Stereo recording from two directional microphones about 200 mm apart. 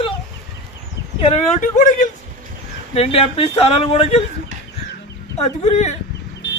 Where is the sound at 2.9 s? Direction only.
30° left (ahead or behind).